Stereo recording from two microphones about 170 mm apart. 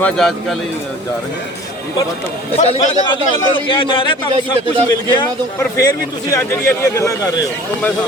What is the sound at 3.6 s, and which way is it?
Speech, 30° left (ahead or behind).